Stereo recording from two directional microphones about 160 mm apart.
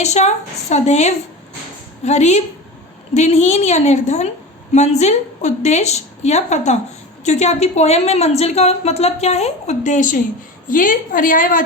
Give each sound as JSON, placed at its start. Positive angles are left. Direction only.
{"t": 0.0, "sound": "a woman's voice", "side_deg": 45}